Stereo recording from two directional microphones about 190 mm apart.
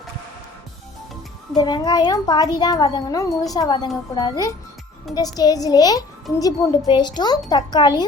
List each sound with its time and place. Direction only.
1.5 s a child's voice: 20° left (ahead or behind)